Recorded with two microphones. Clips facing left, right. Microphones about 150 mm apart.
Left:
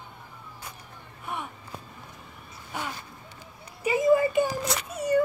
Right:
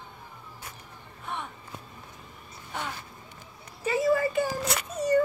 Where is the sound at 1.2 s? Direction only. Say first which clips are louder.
Left 1 dB; 10° left (ahead or behind).